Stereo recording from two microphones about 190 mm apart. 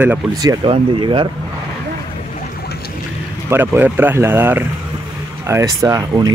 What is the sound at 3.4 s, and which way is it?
Speech, 10° right (ahead or behind).